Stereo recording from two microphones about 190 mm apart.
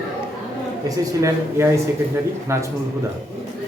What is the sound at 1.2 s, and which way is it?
A man's voice, 15° right (ahead or behind).